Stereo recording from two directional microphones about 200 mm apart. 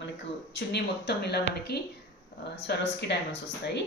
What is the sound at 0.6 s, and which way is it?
A woman's voice, 55° left (ahead or behind).